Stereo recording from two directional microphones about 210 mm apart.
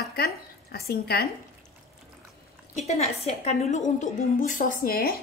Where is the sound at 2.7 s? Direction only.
30° left (ahead or behind).